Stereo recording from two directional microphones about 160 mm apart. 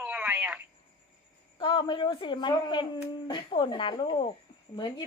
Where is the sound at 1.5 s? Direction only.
30° left (ahead or behind).